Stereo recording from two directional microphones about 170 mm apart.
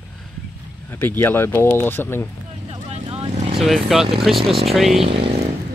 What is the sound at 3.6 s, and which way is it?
Speech, centre (ahead or behind).